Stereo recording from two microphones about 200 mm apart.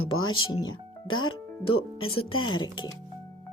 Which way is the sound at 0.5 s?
20° left (ahead or behind).